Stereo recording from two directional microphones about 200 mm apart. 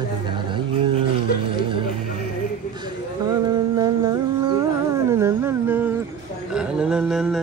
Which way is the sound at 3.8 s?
20° right (ahead or behind).